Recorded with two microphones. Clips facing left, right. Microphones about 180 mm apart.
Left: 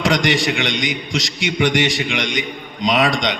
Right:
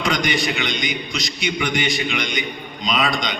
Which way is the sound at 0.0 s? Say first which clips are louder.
Left 4 dB; 90° left.